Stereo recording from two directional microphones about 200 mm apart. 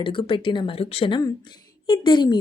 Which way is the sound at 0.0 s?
25° left (ahead or behind).